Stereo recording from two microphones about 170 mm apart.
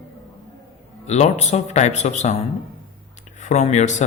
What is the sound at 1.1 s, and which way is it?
Speech, 40° left (ahead or behind).